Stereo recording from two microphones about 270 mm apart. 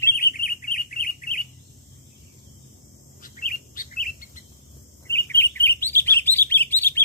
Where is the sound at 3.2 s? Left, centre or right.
Left.